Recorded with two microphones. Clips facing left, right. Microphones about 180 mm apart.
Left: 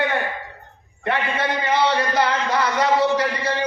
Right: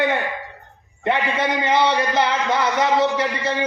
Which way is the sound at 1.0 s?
20° right (ahead or behind).